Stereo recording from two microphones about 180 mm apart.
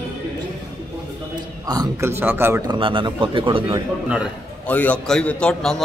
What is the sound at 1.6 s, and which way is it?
A man's voice, 20° right (ahead or behind).